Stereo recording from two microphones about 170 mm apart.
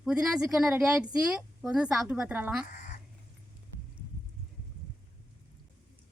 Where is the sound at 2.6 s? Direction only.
50° left (ahead or behind).